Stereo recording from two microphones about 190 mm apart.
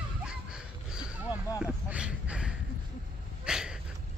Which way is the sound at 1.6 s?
5° right (ahead or behind).